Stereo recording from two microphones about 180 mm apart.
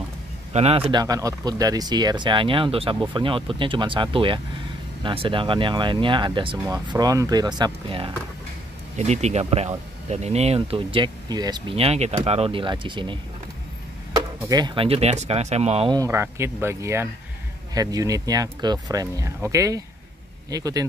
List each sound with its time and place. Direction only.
0.5 s speech: 35° right (ahead or behind)
8.9 s speech: 40° right (ahead or behind)
15.9 s speech: 15° right (ahead or behind)